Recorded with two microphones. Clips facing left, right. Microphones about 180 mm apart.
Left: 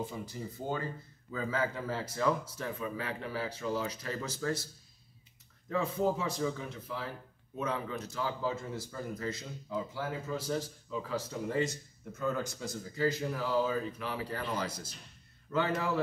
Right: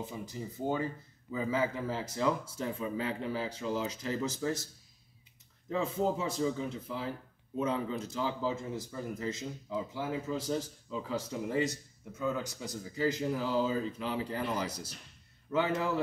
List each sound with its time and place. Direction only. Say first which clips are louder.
0.3 s speech: right 3 dB; 15° right (ahead or behind)
5.7 s speech: even; 20° right (ahead or behind)